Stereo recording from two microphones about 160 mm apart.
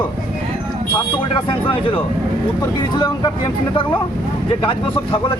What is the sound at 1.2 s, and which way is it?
Speech, 35° left (ahead or behind).